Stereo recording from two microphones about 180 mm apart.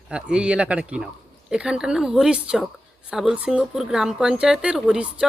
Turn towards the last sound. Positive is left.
turn(degrees=-5)  # may be behind; listen again after turning